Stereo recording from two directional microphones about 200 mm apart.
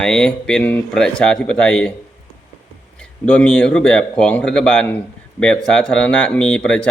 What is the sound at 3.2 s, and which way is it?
Speech, 5° left (ahead or behind).